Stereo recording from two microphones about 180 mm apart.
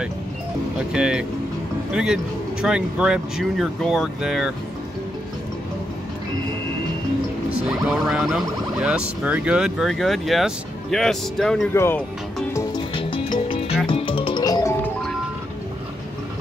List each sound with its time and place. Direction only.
0.9 s speech: 5° right (ahead or behind)
7.6 s speech: centre (ahead or behind)
11.7 s speech: 15° left (ahead or behind)
12.5 s music: 25° left (ahead or behind)